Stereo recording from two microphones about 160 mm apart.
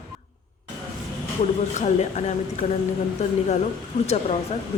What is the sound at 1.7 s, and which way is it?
Speech, 45° left (ahead or behind).